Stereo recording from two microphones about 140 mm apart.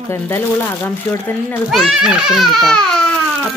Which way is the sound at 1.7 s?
5° right (ahead or behind).